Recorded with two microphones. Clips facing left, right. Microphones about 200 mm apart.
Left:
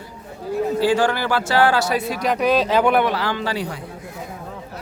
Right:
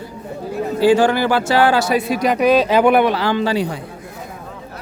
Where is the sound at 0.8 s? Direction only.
20° right (ahead or behind).